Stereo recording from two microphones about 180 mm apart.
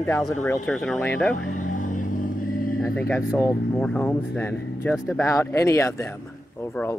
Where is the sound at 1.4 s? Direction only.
45° left (ahead or behind).